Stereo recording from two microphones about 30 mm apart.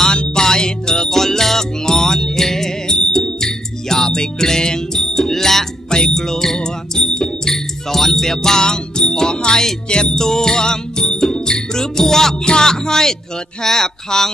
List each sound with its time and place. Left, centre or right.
0.1 s music: left
1.1 s music: centre
5.9 s music: left
7.5 s music: centre
8.4 s music: left
10.1 s music: centre
13.6 s speech: centre